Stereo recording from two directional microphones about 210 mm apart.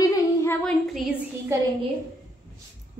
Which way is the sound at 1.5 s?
15° right (ahead or behind).